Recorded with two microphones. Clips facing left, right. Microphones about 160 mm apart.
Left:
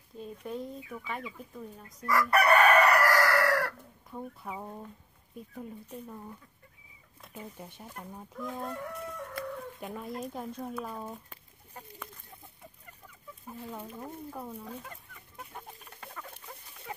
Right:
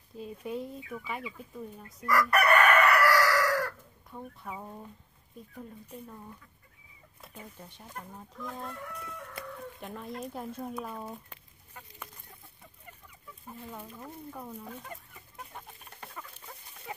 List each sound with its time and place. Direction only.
0.2 s speech: 5° right (ahead or behind)
2.0 s chicken: 30° left (ahead or behind); by 3.7 s 65° left (ahead or behind)
4.1 s speech: 5° left (ahead or behind)
7.5 s speech: 10° left (ahead or behind)
9.8 s speech: 5° left (ahead or behind)
13.7 s speech: 10° left (ahead or behind)